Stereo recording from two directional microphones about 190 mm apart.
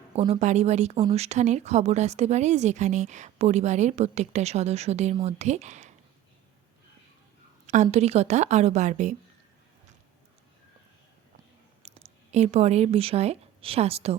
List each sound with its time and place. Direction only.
0.2 s a woman's voice: 35° right (ahead or behind)
7.7 s a woman's voice: 35° right (ahead or behind)
11.8 s speech: 35° right (ahead or behind)